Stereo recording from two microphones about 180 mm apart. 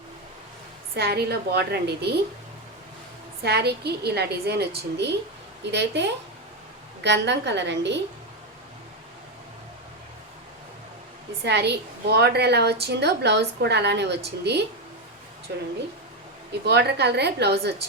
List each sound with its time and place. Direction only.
0.9 s a woman's voice: 65° right (ahead or behind)
3.4 s a woman's voice: 65° right (ahead or behind)
5.7 s a woman's voice: 70° right (ahead or behind)
11.4 s a woman's voice: 70° right (ahead or behind)